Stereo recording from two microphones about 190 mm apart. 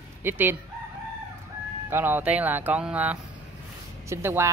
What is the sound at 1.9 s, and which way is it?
Speech, 10° right (ahead or behind).